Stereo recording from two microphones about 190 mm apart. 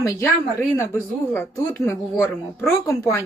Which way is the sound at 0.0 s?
15° left (ahead or behind).